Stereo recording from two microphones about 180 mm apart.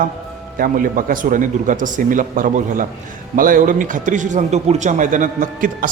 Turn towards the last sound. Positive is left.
turn(degrees=-45)  # may be behind; listen again after turning